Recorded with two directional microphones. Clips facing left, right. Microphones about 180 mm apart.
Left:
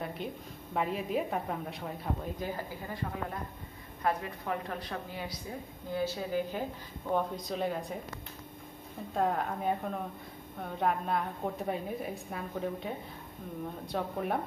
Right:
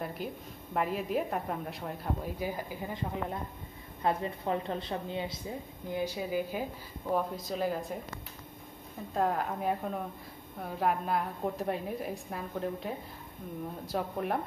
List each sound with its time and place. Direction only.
0.2 s a woman's voice: centre (ahead or behind)
2.4 s a woman's voice: 15° right (ahead or behind)
9.1 s a woman's voice: centre (ahead or behind)